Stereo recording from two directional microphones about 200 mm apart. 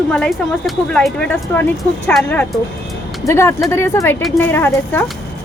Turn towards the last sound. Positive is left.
turn(degrees=10)  # may be behind; listen again after turning